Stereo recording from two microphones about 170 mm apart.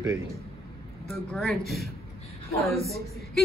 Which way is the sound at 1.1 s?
Centre (ahead or behind).